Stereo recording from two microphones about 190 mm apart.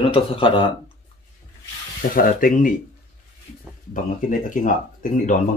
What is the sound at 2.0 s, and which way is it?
Speech, 50° left (ahead or behind).